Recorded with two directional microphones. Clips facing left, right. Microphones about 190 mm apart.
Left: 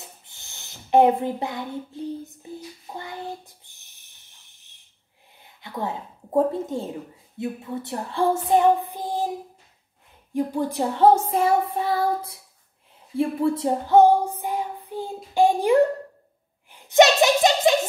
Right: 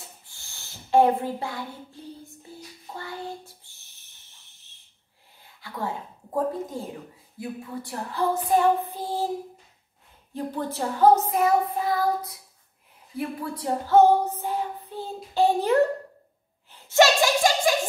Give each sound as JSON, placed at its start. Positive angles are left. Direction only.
{"t": 0.2, "sound": "a sound", "side_deg": 20}
{"t": 2.2, "sound": "child singing", "side_deg": 20}
{"t": 5.4, "sound": "a woman's voice", "side_deg": 20}
{"t": 7.3, "sound": "child singing", "side_deg": 25}
{"t": 10.3, "sound": "a woman's voice", "side_deg": 10}
{"t": 11.2, "sound": "child singing", "side_deg": 30}
{"t": 13.1, "sound": "a sound", "side_deg": 25}